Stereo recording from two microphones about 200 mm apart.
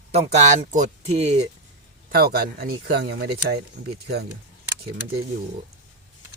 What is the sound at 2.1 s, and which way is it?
Speech, 45° right (ahead or behind).